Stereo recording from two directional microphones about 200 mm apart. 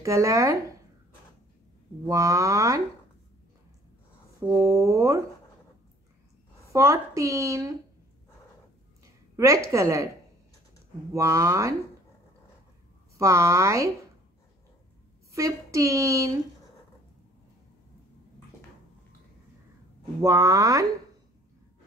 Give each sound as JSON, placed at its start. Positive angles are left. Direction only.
{"t": 0.0, "sound": "a woman's voice", "side_deg": -15}
{"t": 2.0, "sound": "a woman's voice", "side_deg": -15}
{"t": 4.5, "sound": "a woman's voice", "side_deg": -15}
{"t": 6.7, "sound": "a woman's voice", "side_deg": -15}
{"t": 9.4, "sound": "a woman's voice", "side_deg": -15}
{"t": 11.1, "sound": "a woman's voice", "side_deg": -15}
{"t": 13.2, "sound": "a woman's voice", "side_deg": -15}
{"t": 15.3, "sound": "a woman's voice", "side_deg": -15}
{"t": 20.2, "sound": "a woman's voice", "side_deg": -15}